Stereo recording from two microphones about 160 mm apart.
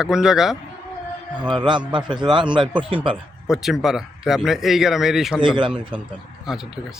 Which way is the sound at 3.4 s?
Centre (ahead or behind).